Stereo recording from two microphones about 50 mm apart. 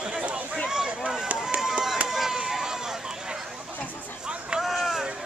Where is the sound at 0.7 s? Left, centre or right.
Centre.